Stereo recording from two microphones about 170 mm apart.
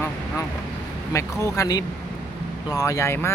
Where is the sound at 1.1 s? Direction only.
20° left (ahead or behind).